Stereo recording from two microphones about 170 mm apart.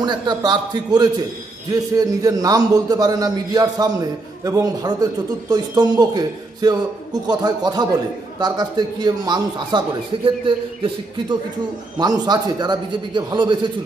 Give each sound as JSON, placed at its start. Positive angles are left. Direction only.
{"t": 0.0, "sound": "speech", "side_deg": -25}